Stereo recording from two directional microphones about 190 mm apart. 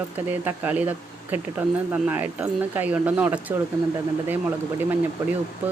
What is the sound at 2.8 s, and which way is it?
Speech, 10° right (ahead or behind).